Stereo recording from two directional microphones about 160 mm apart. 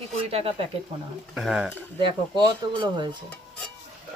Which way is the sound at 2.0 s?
30° right (ahead or behind).